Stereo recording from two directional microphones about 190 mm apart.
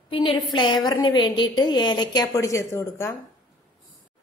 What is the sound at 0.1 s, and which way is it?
A woman's voice, 25° left (ahead or behind).